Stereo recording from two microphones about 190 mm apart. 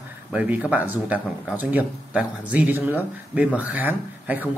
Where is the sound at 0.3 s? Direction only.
5° right (ahead or behind).